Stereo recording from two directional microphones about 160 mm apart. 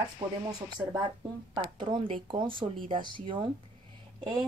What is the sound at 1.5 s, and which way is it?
A woman's voice, 30° right (ahead or behind).